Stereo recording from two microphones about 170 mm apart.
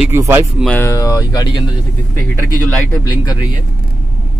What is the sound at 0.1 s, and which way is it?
Speech, 15° right (ahead or behind).